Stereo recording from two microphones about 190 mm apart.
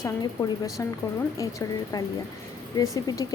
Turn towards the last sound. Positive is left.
turn(degrees=20)  # may be behind; listen again after turning